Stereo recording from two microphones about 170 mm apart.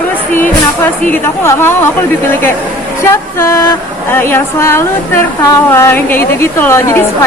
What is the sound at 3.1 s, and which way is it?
A woman's voice, 15° left (ahead or behind).